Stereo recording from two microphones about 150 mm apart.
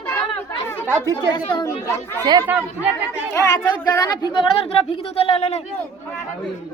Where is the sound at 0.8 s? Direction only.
15° right (ahead or behind).